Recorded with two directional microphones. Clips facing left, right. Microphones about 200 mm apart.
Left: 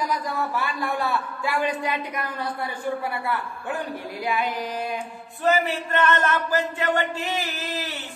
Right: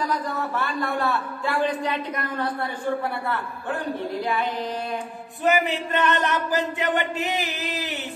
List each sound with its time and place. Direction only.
0.1 s a man's voice: 10° left (ahead or behind)
5.4 s speech: 20° right (ahead or behind)